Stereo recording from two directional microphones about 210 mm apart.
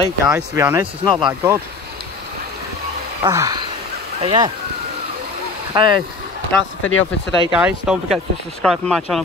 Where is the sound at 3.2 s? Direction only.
20° right (ahead or behind).